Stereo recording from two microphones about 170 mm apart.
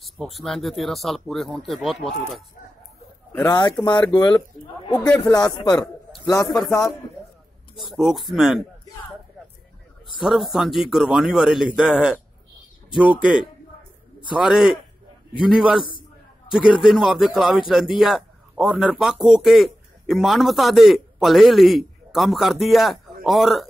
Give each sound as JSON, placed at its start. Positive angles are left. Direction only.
{"t": 0.0, "sound": "speech", "side_deg": 0}
{"t": 3.3, "sound": "speech", "side_deg": 20}
{"t": 4.9, "sound": "speech", "side_deg": 5}
{"t": 6.5, "sound": "speech", "side_deg": 25}
{"t": 7.9, "sound": "speech", "side_deg": 0}
{"t": 10.2, "sound": "speech", "side_deg": 0}
{"t": 14.3, "sound": "speech", "side_deg": -5}